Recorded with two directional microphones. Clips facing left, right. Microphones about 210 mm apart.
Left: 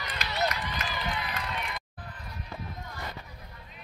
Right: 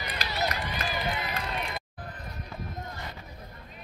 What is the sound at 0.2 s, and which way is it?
Run, 40° right (ahead or behind).